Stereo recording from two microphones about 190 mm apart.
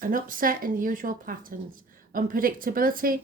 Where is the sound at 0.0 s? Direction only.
45° right (ahead or behind).